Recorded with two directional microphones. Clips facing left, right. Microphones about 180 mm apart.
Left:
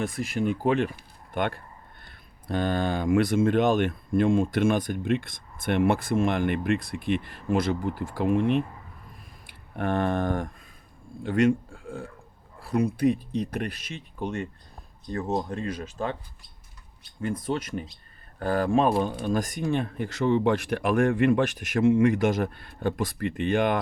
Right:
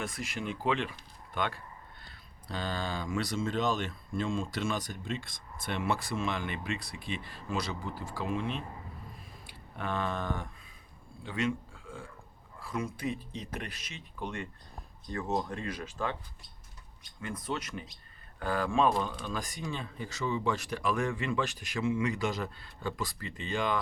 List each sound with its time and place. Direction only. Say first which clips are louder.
0.1 s speech: left 10 dB; 45° left (ahead or behind)
9.7 s speech: left 8 dB; 55° left (ahead or behind)
12.6 s speech: left 11 dB; 65° left (ahead or behind); by 14.4 s 45° left (ahead or behind)
15.2 s speech: left 4 dB; 25° left (ahead or behind)
17.6 s speech: left 8 dB; 50° left (ahead or behind)
19.0 s speech: left 10 dB; 50° left (ahead or behind)